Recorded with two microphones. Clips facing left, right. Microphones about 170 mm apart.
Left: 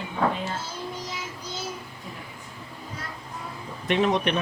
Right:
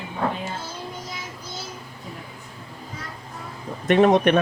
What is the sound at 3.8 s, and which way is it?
Speech, 50° right (ahead or behind).